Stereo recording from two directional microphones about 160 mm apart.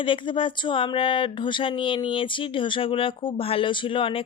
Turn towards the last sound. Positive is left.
turn(degrees=35)  # may be behind; listen again after turning